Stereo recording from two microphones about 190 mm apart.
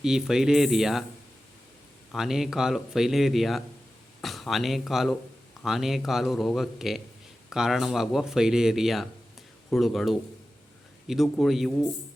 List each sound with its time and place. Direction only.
0.0 s speech: 5° right (ahead or behind)
2.1 s speech: centre (ahead or behind)